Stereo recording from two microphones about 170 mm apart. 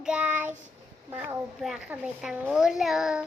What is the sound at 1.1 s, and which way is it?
A woman's voice, 5° right (ahead or behind).